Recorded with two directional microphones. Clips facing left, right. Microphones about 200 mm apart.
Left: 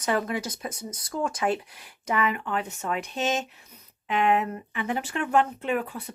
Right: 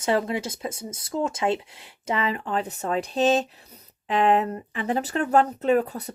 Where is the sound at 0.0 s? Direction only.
25° right (ahead or behind).